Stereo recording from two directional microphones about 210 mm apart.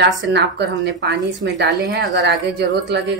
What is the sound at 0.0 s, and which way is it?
Speech, 55° right (ahead or behind).